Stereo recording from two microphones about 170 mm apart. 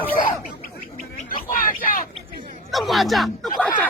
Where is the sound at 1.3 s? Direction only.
55° left (ahead or behind).